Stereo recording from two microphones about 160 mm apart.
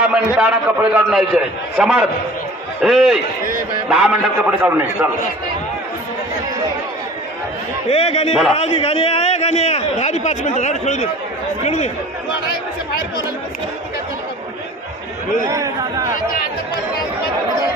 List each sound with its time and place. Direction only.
0.0 s a man's voice: 5° right (ahead or behind)
7.9 s a man's voice: 40° left (ahead or behind)
15.4 s a man's voice: 20° right (ahead or behind)